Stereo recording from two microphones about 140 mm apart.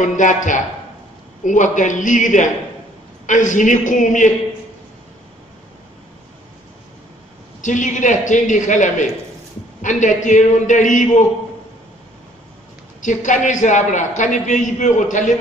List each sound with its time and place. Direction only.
0.0 s a man's voice: 65° left (ahead or behind)
7.6 s a man's voice: 60° left (ahead or behind)
13.0 s a man's voice: 65° left (ahead or behind)